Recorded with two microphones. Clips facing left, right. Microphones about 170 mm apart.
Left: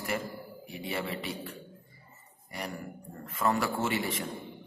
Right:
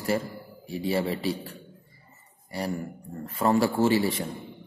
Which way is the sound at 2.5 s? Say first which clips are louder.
Right 8 dB; 35° right (ahead or behind).